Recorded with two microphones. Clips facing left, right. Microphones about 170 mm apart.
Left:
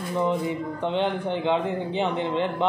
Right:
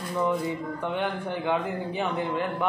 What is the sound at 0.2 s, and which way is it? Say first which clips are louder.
A man's voice: left 1 dB; 20° left (ahead or behind).